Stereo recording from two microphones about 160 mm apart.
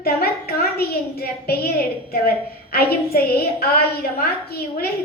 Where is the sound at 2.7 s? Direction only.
75° left (ahead or behind).